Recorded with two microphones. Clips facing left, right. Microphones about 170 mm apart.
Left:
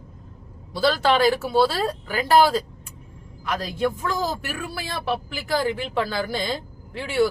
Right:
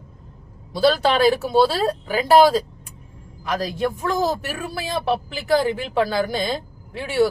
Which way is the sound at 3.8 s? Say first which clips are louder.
Right 2 dB; 20° right (ahead or behind).